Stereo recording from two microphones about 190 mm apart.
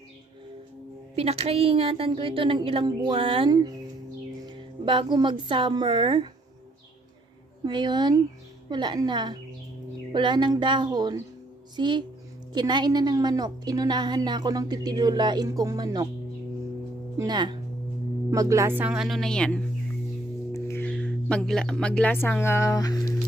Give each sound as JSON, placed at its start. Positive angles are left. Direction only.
{"t": 1.1, "sound": "a woman's voice", "side_deg": -30}
{"t": 7.6, "sound": "a woman's voice", "side_deg": -25}
{"t": 17.2, "sound": "a woman's voice", "side_deg": -20}
{"t": 20.5, "sound": "music", "side_deg": 15}
{"t": 20.9, "sound": "speech", "side_deg": 5}